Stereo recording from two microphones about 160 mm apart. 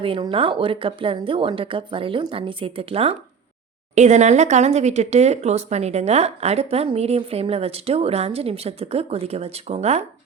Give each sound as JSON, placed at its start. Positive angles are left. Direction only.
{"t": 0.0, "sound": "speech", "side_deg": -35}